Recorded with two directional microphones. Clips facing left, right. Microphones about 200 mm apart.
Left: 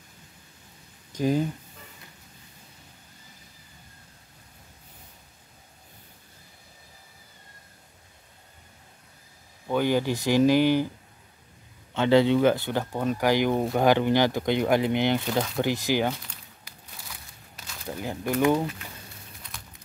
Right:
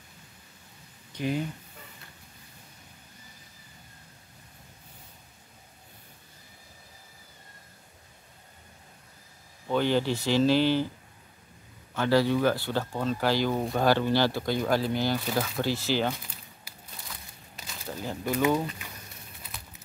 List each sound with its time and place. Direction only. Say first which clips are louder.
1.1 s speech: left 5 dB; 40° left (ahead or behind)
9.7 s speech: left 1 dB; 10° left (ahead or behind)
11.9 s speech: left 4 dB; 20° left (ahead or behind)
17.1 s a sound: even; centre (ahead or behind)
17.8 s speech: left 2 dB; 15° left (ahead or behind)